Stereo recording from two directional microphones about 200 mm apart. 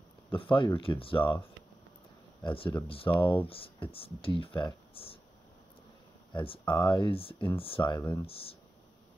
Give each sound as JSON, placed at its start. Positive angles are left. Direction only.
{"t": 0.4, "sound": "speech", "side_deg": 25}
{"t": 2.4, "sound": "speech", "side_deg": 25}
{"t": 6.3, "sound": "speech", "side_deg": 25}
{"t": 8.3, "sound": "speech", "side_deg": 30}